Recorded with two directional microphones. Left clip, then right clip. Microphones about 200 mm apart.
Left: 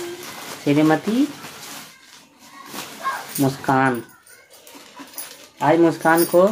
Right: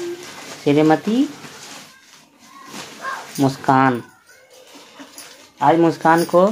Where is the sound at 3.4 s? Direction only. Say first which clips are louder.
Right 4 dB; 40° right (ahead or behind).